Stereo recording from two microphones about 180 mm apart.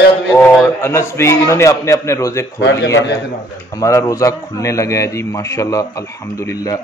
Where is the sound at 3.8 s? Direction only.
15° left (ahead or behind).